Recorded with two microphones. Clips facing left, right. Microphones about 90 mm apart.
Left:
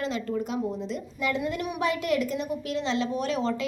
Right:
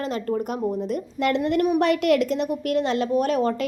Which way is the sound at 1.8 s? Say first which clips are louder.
Right 6 dB; 70° right (ahead or behind).